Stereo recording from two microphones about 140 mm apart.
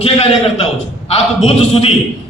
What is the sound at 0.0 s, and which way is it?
A man's voice, 45° left (ahead or behind).